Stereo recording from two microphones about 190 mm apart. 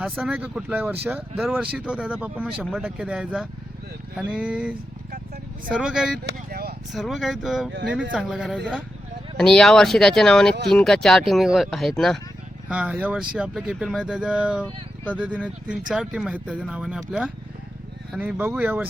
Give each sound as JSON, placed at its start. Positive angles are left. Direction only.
{"t": 0.0, "sound": "speech", "side_deg": -5}
{"t": 5.7, "sound": "speech", "side_deg": -5}
{"t": 6.2, "sound": "a sound", "side_deg": -55}
{"t": 6.9, "sound": "speech", "side_deg": 0}
{"t": 7.7, "sound": "speech", "side_deg": -55}
{"t": 8.1, "sound": "speech", "side_deg": 0}